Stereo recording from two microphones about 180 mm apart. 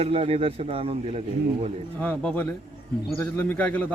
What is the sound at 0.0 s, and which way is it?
Speech, 35° right (ahead or behind).